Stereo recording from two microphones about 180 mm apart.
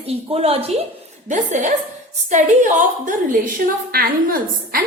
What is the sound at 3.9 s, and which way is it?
Speech, 55° right (ahead or behind).